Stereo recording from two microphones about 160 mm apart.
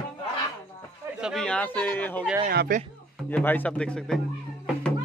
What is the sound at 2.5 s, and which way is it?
Speech, 75° right (ahead or behind).